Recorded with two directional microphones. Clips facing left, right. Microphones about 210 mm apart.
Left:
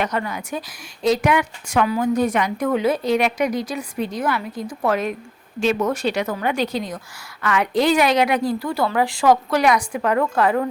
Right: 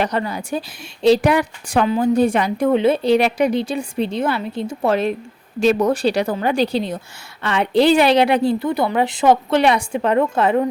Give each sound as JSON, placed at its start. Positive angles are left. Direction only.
{"t": 0.0, "sound": "a woman's voice", "side_deg": -30}